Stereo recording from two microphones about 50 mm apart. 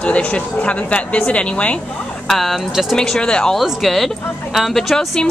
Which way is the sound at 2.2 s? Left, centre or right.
Centre.